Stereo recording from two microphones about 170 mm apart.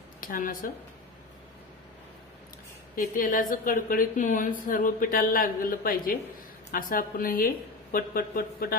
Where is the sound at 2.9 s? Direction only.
50° left (ahead or behind).